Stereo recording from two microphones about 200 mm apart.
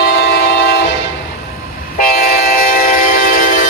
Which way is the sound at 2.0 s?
45° left (ahead or behind).